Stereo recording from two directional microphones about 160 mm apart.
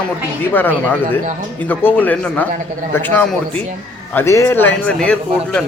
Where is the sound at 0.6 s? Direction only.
10° left (ahead or behind).